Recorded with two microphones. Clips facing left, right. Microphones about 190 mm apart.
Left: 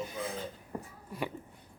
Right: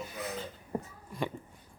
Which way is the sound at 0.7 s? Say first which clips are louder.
Right 6 dB; 20° right (ahead or behind).